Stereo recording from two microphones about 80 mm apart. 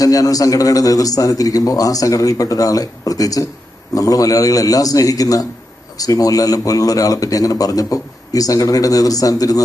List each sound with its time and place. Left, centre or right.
0.0 s a man's voice: left